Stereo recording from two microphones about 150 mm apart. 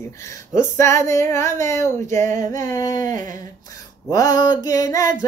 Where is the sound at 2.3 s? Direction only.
60° right (ahead or behind).